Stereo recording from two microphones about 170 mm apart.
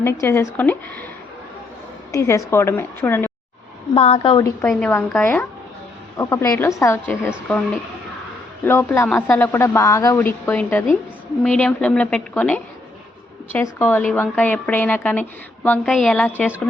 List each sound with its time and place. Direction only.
0.0 s a woman's voice: 15° left (ahead or behind)
2.1 s a woman's voice: 20° left (ahead or behind)
3.9 s a woman's voice: 35° left (ahead or behind)
4.7 s a woman's voice: 10° left (ahead or behind)
8.6 s a woman's voice: 10° left (ahead or behind)